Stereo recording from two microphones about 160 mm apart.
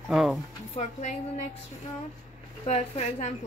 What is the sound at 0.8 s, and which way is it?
Speech, 50° left (ahead or behind).